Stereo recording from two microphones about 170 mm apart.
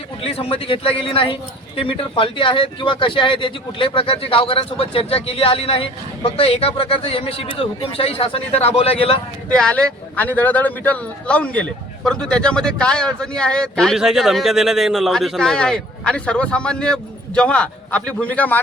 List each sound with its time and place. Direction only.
0.2 s a man's voice: 35° left (ahead or behind)
9.5 s a man's voice: 5° left (ahead or behind)